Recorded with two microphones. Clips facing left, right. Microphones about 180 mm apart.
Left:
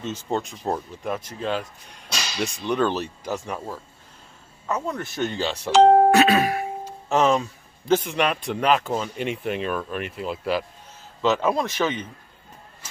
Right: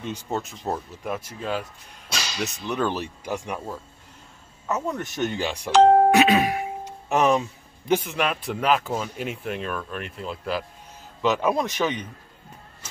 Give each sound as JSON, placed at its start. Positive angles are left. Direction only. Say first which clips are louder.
{"t": 0.0, "sound": "speech", "louder": "left 2 dB", "side_deg": -10}
{"t": 4.8, "sound": "speech", "louder": "even", "side_deg": -15}
{"t": 5.7, "sound": "speech", "louder": "left 1 dB", "side_deg": 0}
{"t": 6.1, "sound": "music", "louder": "left 1 dB", "side_deg": -15}
{"t": 8.1, "sound": "speech", "louder": "left 2 dB", "side_deg": -5}
{"t": 11.2, "sound": "speech", "louder": "left 1 dB", "side_deg": -15}